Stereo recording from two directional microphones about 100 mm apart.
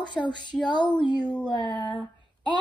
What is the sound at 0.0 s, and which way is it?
Speech, 50° left (ahead or behind).